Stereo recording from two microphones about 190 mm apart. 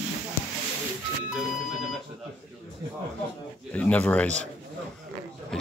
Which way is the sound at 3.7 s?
10° left (ahead or behind).